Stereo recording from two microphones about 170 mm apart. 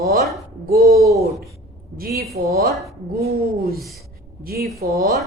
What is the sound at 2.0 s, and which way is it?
Speech, 65° right (ahead or behind).